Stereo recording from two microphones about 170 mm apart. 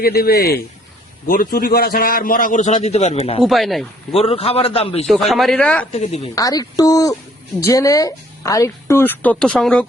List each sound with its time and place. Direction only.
0.0 s a man's voice: 65° left (ahead or behind)
1.3 s a man's voice: 55° left (ahead or behind); by 3.2 s 40° left (ahead or behind)
3.4 s speech: centre (ahead or behind)
4.1 s a man's voice: 35° left (ahead or behind)
5.0 s speech: centre (ahead or behind)
5.9 s a man's voice: 40° left (ahead or behind)
6.3 s a woman's voice: 20° left (ahead or behind); by 9.8 s 5° left (ahead or behind)